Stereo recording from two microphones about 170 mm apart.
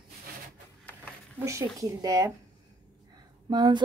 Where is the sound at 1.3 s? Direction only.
15° right (ahead or behind).